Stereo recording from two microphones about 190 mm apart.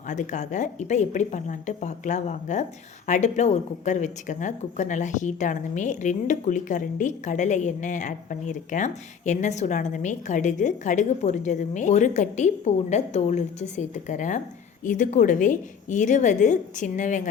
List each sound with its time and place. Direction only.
0.1 s speech: 40° left (ahead or behind)